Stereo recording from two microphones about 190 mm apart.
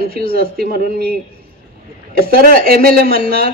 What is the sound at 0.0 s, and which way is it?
A man's voice, 50° right (ahead or behind).